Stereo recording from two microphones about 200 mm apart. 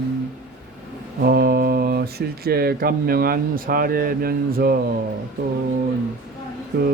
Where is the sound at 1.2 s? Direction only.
50° right (ahead or behind).